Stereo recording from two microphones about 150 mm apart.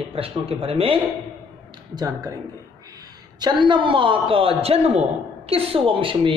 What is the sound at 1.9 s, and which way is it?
Speech, 25° right (ahead or behind).